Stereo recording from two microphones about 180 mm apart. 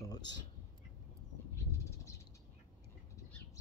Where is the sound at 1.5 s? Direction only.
15° left (ahead or behind).